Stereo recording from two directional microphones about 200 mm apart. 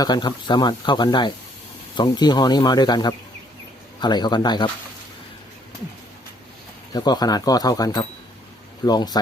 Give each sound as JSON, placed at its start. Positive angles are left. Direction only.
{"t": 0.0, "sound": "speech", "side_deg": 20}
{"t": 6.9, "sound": "speech", "side_deg": 20}